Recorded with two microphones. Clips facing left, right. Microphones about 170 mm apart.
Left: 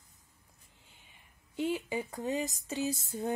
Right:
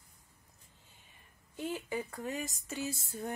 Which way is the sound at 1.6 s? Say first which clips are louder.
Left 4 dB; 15° left (ahead or behind).